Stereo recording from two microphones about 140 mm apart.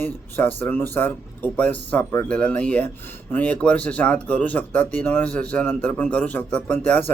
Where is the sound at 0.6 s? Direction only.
15° left (ahead or behind).